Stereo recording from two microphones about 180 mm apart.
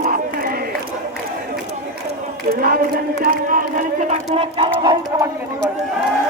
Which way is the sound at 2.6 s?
55° right (ahead or behind).